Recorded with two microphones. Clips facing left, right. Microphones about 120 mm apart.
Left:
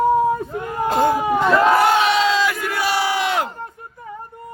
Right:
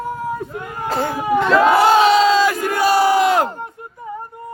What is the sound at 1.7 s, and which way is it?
Battle cry, 30° right (ahead or behind).